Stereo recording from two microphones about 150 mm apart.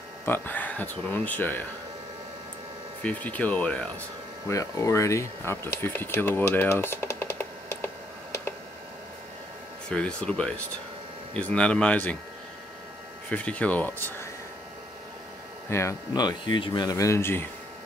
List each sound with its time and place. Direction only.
0.2 s speech: 15° left (ahead or behind)
3.0 s speech: 10° left (ahead or behind)
4.5 s speech: 20° left (ahead or behind)
9.8 s speech: 5° left (ahead or behind)
13.3 s speech: 10° left (ahead or behind)
15.7 s speech: 20° left (ahead or behind)